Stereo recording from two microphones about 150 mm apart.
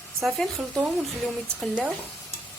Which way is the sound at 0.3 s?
5° left (ahead or behind).